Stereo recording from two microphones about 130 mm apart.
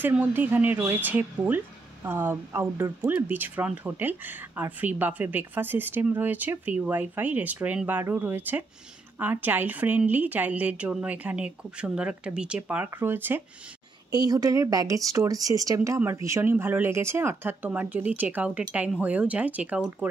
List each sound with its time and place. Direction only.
0.0 s speech: 15° right (ahead or behind)
14.1 s speech: 30° right (ahead or behind); by 20.2 s 10° right (ahead or behind)